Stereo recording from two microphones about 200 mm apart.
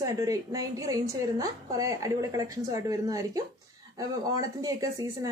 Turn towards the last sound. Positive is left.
turn(degrees=-15)  # may be behind; listen again after turning